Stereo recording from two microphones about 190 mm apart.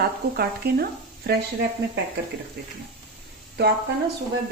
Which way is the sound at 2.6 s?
60° right (ahead or behind).